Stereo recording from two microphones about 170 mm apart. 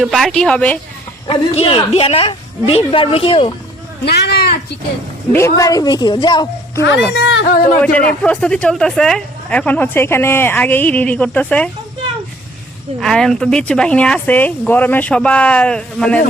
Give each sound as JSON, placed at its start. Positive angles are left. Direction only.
{"t": 0.0, "sound": "speech", "side_deg": 0}
{"t": 1.3, "sound": "a woman's voice", "side_deg": 30}
{"t": 4.0, "sound": "a sound", "side_deg": 75}
{"t": 5.3, "sound": "a woman's voice", "side_deg": 20}
{"t": 7.1, "sound": "speech", "side_deg": 90}
{"t": 8.2, "sound": "speech", "side_deg": 5}
{"t": 13.0, "sound": "speech", "side_deg": 5}